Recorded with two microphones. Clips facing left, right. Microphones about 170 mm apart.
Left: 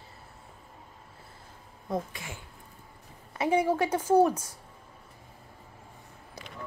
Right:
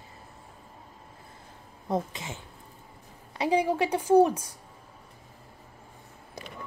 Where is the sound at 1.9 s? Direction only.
25° right (ahead or behind).